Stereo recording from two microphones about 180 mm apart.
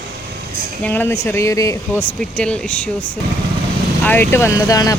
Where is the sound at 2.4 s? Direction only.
5° left (ahead or behind).